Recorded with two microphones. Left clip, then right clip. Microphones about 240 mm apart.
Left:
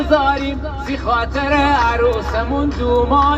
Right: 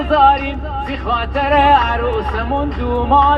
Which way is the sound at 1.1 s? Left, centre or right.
Left.